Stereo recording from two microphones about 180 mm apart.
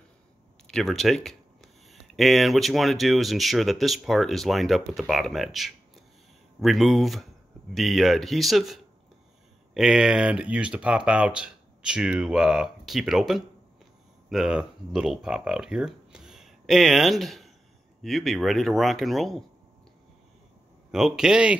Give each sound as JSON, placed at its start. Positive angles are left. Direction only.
{"t": 0.7, "sound": "speech", "side_deg": 0}
{"t": 20.9, "sound": "speech", "side_deg": -5}